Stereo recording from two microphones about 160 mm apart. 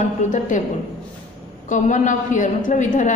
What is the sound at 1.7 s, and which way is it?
A woman's voice, 50° left (ahead or behind).